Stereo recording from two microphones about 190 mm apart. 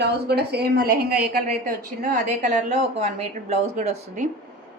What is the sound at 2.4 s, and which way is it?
A woman's voice, 40° right (ahead or behind).